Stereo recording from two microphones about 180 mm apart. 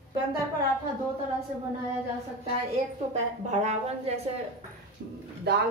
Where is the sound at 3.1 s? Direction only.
35° right (ahead or behind).